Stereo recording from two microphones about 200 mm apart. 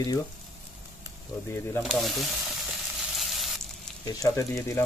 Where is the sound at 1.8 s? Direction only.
Centre (ahead or behind).